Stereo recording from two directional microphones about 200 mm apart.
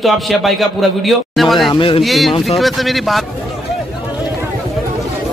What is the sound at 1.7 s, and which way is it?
Speech, 25° left (ahead or behind).